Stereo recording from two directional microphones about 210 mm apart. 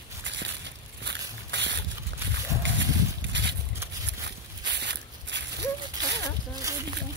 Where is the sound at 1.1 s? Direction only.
55° right (ahead or behind).